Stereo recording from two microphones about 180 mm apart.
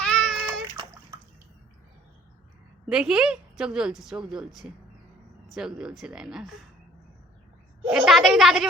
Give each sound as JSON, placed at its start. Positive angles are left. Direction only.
{"t": 0.0, "sound": "a sound", "side_deg": 5}
{"t": 0.4, "sound": "water", "side_deg": -20}
{"t": 2.9, "sound": "a woman's voice", "side_deg": -5}
{"t": 7.9, "sound": "a woman's voice", "side_deg": 0}